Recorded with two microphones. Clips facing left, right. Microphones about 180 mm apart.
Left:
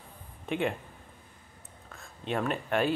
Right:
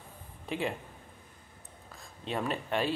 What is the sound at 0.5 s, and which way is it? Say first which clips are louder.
Speech: left 3 dB; centre (ahead or behind).